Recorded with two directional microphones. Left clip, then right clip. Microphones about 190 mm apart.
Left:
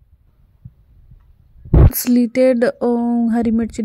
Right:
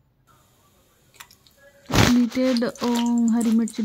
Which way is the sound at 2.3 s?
20° left (ahead or behind).